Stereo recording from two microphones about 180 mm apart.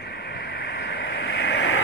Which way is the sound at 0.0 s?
65° left (ahead or behind).